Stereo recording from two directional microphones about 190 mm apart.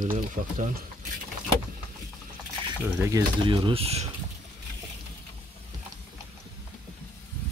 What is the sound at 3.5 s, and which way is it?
Speech, 30° right (ahead or behind).